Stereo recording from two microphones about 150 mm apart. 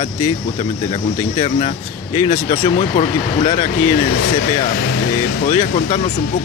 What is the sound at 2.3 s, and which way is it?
Speech, 70° left (ahead or behind).